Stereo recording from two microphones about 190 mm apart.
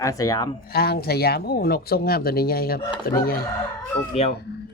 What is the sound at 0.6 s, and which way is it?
Speech, 55° left (ahead or behind).